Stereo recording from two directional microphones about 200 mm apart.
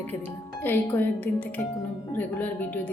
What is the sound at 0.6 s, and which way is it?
Speech, 10° left (ahead or behind).